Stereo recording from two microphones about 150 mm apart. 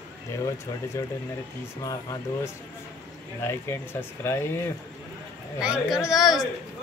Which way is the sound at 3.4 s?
15° left (ahead or behind).